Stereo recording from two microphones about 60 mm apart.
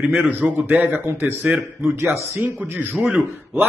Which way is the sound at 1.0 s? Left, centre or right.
Right.